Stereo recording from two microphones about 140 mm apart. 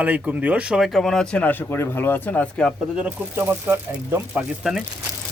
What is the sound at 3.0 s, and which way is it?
Speech, 15° right (ahead or behind).